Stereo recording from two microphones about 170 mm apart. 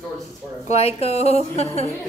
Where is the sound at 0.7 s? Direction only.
35° left (ahead or behind).